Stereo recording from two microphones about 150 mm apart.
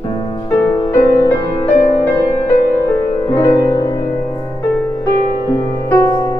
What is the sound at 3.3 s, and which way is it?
Music, 25° left (ahead or behind).